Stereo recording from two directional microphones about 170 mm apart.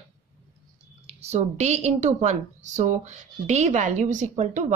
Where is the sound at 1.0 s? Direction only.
40° right (ahead or behind).